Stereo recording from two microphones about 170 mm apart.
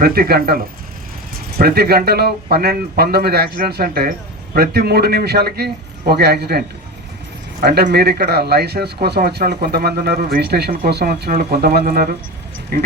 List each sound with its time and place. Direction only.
0.0 s speech: 65° right (ahead or behind)